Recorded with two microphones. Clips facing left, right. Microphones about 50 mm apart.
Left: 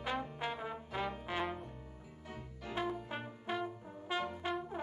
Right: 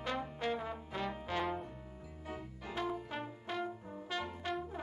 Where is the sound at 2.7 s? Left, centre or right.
Left.